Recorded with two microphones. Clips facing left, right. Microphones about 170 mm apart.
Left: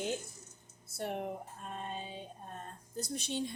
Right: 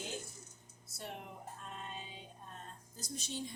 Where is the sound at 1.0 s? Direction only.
55° left (ahead or behind).